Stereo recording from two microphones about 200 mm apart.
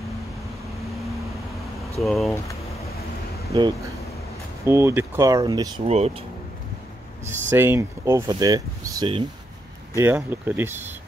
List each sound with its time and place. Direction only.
2.0 s speech: centre (ahead or behind)
3.5 s speech: 20° right (ahead or behind)
5.9 s speech: 30° right (ahead or behind)
7.2 s speech: 10° right (ahead or behind)
9.9 s speech: 10° right (ahead or behind)